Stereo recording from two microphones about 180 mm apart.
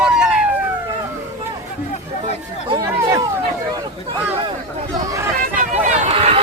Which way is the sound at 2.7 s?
20° right (ahead or behind).